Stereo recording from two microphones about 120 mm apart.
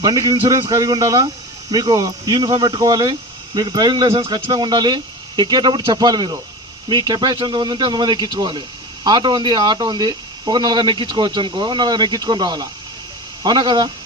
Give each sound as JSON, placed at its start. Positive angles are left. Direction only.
{"t": 0.0, "sound": "speech", "side_deg": -30}